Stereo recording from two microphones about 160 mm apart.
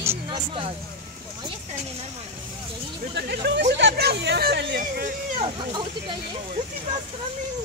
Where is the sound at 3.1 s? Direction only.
90° right; by 5.1 s 65° right (ahead or behind).